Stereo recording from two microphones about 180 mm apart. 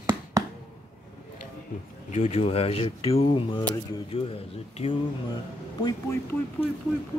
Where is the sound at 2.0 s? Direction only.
35° left (ahead or behind).